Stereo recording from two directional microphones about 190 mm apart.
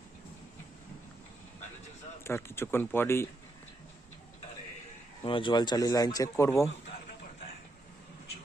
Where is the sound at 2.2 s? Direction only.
15° left (ahead or behind).